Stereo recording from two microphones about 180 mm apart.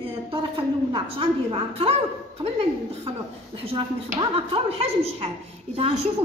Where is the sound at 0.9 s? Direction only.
30° right (ahead or behind).